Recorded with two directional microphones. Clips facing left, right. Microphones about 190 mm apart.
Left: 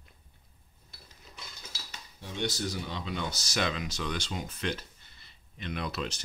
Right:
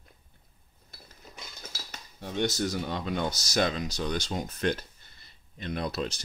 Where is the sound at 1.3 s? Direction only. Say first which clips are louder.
Right 3 dB; 45° right (ahead or behind).